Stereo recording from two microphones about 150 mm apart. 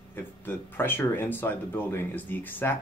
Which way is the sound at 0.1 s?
15° left (ahead or behind).